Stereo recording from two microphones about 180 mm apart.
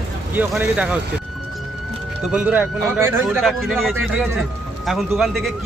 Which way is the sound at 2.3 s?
5° right (ahead or behind).